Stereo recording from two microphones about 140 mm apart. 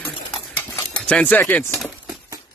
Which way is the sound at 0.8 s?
5° left (ahead or behind).